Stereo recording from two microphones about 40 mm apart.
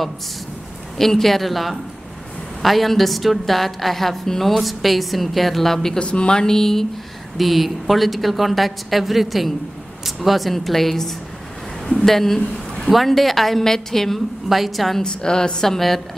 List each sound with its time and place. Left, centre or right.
0.9 s a woman's voice: centre
5.9 s a woman's voice: left; by 6.9 s centre
7.3 s a woman's voice: centre
12.5 s a sound: centre
12.9 s a woman's voice: centre
15.0 s a woman's voice: centre